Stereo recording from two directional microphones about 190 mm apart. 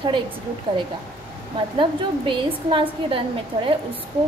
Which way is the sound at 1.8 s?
25° right (ahead or behind).